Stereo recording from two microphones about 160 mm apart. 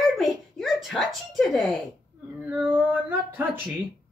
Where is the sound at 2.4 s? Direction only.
10° right (ahead or behind).